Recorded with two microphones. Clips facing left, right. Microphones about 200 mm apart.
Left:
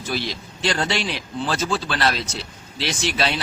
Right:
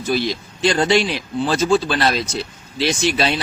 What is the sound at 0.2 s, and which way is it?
Speech, 15° right (ahead or behind).